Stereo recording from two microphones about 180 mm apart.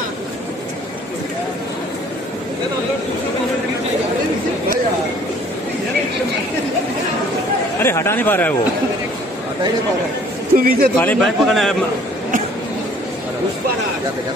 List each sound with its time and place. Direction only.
7.8 s speech: 15° left (ahead or behind)
10.5 s a man's voice: 55° right (ahead or behind)
11.0 s a man's voice: 5° left (ahead or behind)